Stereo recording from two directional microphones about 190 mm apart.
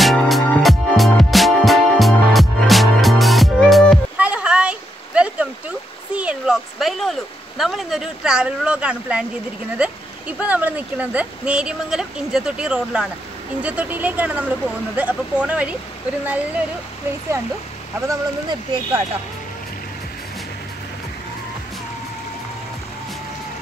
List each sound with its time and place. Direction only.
0.0 s music: centre (ahead or behind)
4.2 s a sound: 5° right (ahead or behind)
9.8 s speech: 5° right (ahead or behind)
18.0 s speech: 15° right (ahead or behind)